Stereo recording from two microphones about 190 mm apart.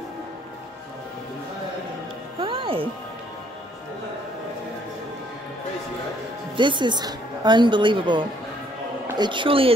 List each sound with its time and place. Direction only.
2.3 s music: 30° right (ahead or behind)
6.5 s a woman's voice: 25° right (ahead or behind)